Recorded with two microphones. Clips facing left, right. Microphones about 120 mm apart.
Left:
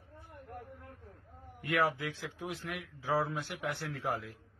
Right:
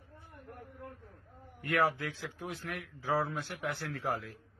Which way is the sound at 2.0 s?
15° left (ahead or behind).